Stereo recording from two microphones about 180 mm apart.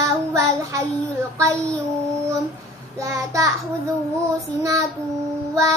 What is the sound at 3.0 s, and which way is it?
Child singing, 20° right (ahead or behind).